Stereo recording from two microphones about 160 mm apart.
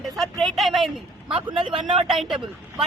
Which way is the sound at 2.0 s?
Centre (ahead or behind).